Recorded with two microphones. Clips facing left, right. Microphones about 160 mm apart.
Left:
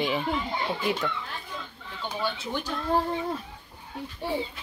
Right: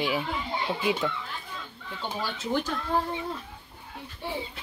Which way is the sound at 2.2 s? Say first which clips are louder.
Right 1 dB; 45° right (ahead or behind).